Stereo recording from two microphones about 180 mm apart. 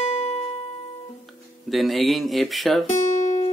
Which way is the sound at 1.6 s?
Centre (ahead or behind).